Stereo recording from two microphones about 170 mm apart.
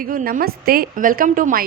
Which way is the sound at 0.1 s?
55° right (ahead or behind).